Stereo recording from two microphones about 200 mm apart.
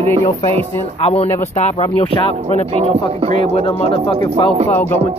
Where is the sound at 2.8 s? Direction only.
30° right (ahead or behind).